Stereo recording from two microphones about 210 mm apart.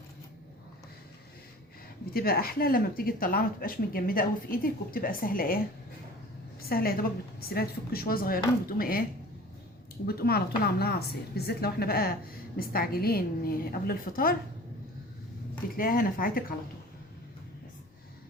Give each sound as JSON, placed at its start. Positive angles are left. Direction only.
{"t": 2.1, "sound": "a woman's voice", "side_deg": 45}
{"t": 6.6, "sound": "a woman's voice", "side_deg": 45}
{"t": 10.1, "sound": "a woman's voice", "side_deg": 45}
{"t": 15.7, "sound": "a woman's voice", "side_deg": 45}